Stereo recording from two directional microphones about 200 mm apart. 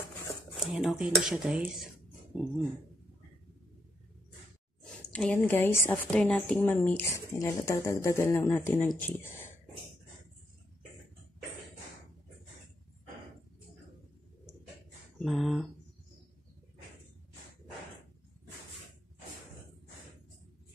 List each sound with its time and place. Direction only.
0.6 s speech: centre (ahead or behind)
4.8 s a woman's voice: 5° left (ahead or behind)
15.1 s speech: centre (ahead or behind)